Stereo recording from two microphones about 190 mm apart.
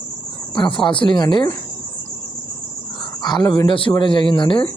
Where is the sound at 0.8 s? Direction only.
25° left (ahead or behind).